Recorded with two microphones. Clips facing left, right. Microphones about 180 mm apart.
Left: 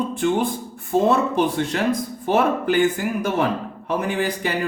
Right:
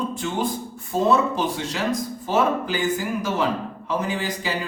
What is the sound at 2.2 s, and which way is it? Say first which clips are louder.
A man's voice: left 3 dB; 60° left (ahead or behind).